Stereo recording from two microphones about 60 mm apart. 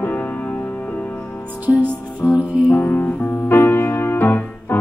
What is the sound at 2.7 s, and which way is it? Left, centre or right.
Music, left.